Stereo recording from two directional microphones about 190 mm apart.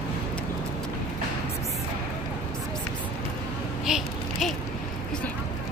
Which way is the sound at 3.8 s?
Centre (ahead or behind).